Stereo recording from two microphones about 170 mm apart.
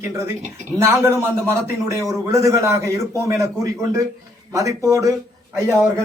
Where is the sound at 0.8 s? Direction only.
15° right (ahead or behind).